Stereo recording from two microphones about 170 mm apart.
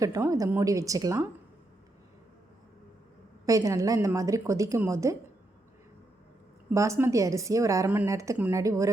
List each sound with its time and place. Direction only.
0.0 s a woman's voice: 20° right (ahead or behind)
3.4 s a woman's voice: 20° right (ahead or behind)
6.7 s a woman's voice: 15° right (ahead or behind)